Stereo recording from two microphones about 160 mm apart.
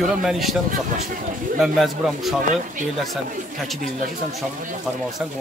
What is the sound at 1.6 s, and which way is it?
Speech, centre (ahead or behind).